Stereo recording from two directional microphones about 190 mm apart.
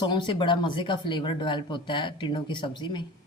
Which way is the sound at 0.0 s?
25° left (ahead or behind).